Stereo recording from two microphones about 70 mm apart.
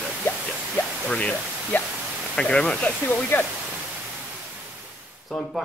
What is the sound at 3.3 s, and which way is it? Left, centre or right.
Speech, left.